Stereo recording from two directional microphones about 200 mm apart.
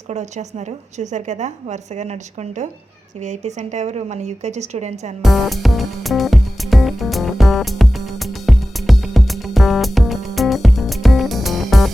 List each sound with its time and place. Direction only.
0.1 s a woman's voice: 35° right (ahead or behind)
5.2 s music: centre (ahead or behind)